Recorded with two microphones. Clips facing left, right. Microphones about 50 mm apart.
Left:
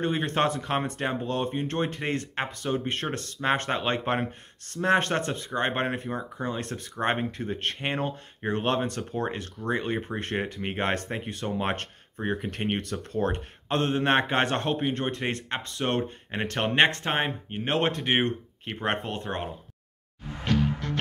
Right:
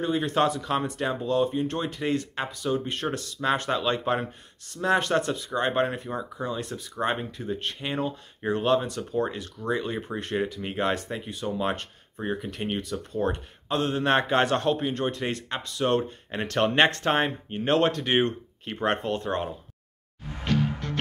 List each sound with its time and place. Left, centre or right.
0.0 s speech: left
6.0 s speech: left
6.4 s speech: left
8.4 s speech: left